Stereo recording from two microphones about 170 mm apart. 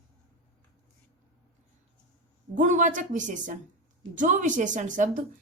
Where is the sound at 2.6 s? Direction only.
45° right (ahead or behind).